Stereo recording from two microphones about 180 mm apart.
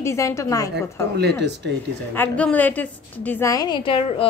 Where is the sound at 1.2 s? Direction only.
65° right (ahead or behind).